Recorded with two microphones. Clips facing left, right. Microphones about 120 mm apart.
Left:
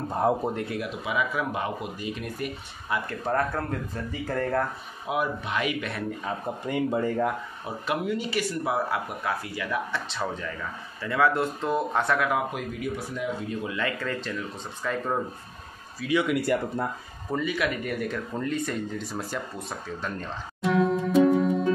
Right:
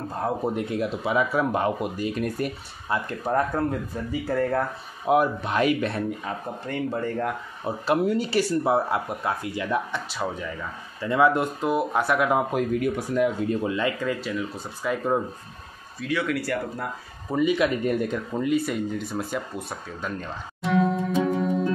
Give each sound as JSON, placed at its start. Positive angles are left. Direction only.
{"t": 0.6, "sound": "speech", "side_deg": -25}
{"t": 3.1, "sound": "speech", "side_deg": -10}
{"t": 5.0, "sound": "speech", "side_deg": -45}
{"t": 6.6, "sound": "speech", "side_deg": 15}
{"t": 7.6, "sound": "speech", "side_deg": -35}
{"t": 10.0, "sound": "speech", "side_deg": -5}
{"t": 12.5, "sound": "speech", "side_deg": -55}
{"t": 13.7, "sound": "speech", "side_deg": -15}
{"t": 16.1, "sound": "speech", "side_deg": 15}
{"t": 17.4, "sound": "speech", "side_deg": -20}